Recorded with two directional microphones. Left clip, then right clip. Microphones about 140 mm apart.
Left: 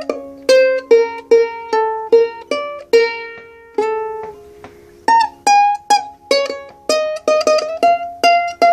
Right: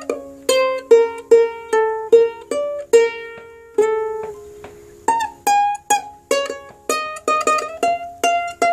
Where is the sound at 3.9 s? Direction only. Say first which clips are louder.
Even; 40° left (ahead or behind).